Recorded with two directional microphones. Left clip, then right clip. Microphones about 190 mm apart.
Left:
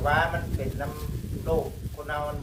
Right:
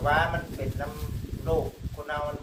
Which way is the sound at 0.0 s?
Centre (ahead or behind).